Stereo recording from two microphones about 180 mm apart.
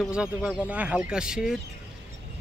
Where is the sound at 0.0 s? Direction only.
5° right (ahead or behind).